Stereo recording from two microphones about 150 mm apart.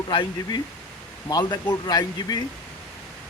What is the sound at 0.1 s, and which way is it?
A man's voice, 30° left (ahead or behind).